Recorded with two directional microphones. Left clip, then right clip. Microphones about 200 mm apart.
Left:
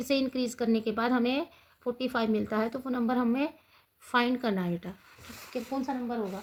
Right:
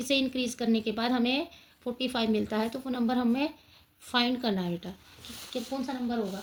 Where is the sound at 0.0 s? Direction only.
35° left (ahead or behind).